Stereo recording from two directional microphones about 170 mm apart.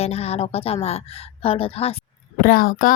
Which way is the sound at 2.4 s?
55° left (ahead or behind).